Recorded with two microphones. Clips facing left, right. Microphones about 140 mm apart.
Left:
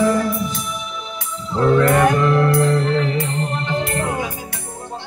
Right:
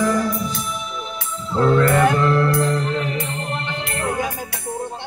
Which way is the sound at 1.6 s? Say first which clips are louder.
Left 1 dB; 10° left (ahead or behind).